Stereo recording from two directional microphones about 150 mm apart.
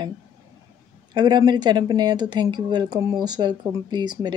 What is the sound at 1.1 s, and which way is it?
Speech, 30° right (ahead or behind).